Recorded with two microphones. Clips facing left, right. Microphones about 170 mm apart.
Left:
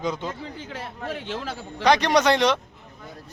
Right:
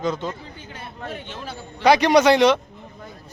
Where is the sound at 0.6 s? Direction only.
90° left.